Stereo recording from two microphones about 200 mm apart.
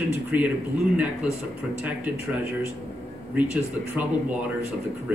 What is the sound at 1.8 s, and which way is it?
Speech, 5° right (ahead or behind).